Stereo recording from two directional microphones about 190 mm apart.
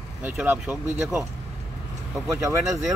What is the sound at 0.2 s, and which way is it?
Speech, 10° right (ahead or behind).